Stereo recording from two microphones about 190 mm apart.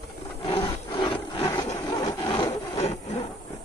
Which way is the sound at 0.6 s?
25° left (ahead or behind).